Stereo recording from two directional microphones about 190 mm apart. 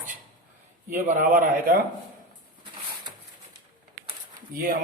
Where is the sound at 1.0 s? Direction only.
40° right (ahead or behind).